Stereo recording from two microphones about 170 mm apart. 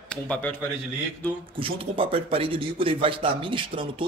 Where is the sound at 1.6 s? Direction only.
30° right (ahead or behind).